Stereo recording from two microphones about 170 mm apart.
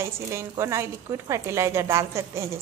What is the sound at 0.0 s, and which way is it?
Speech, 15° right (ahead or behind).